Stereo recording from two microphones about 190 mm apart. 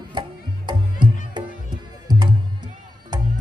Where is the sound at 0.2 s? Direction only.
25° right (ahead or behind).